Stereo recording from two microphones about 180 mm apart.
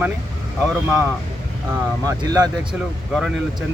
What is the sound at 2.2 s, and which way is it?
Speech, 20° right (ahead or behind).